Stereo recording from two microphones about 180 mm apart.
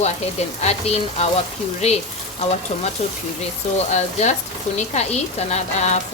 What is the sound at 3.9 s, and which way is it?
Speech, 40° left (ahead or behind).